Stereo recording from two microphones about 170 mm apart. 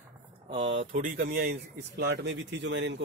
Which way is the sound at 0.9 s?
55° right (ahead or behind).